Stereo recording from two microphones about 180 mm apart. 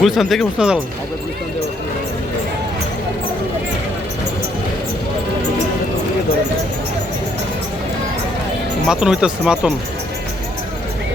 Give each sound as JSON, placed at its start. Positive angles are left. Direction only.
{"t": 0.0, "sound": "speech", "side_deg": 0}
{"t": 8.9, "sound": "speech", "side_deg": -5}